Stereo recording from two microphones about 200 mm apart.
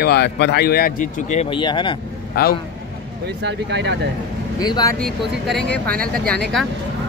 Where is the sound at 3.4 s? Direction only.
60° right (ahead or behind).